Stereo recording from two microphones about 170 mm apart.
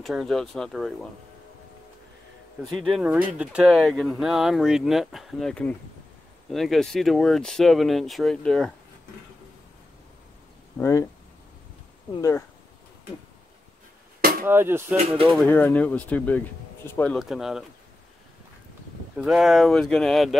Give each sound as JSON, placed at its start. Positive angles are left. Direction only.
{"t": 0.0, "sound": "speech", "side_deg": 0}
{"t": 2.6, "sound": "speech", "side_deg": 0}
{"t": 10.8, "sound": "speech", "side_deg": 20}
{"t": 12.2, "sound": "speech", "side_deg": 20}
{"t": 14.4, "sound": "speech", "side_deg": -15}
{"t": 15.2, "sound": "speech", "side_deg": 0}
{"t": 17.2, "sound": "speech", "side_deg": 0}
{"t": 19.1, "sound": "speech", "side_deg": 0}